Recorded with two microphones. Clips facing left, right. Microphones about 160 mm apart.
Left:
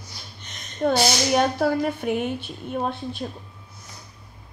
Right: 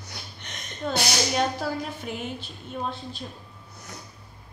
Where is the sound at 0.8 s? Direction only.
55° left (ahead or behind).